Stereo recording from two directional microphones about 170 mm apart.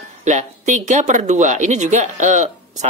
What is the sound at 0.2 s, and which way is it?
Speech, 45° right (ahead or behind).